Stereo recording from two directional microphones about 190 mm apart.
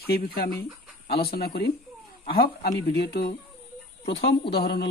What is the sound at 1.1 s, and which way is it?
Speech, 55° left (ahead or behind).